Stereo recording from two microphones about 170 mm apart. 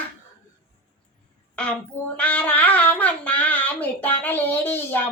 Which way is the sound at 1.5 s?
5° left (ahead or behind).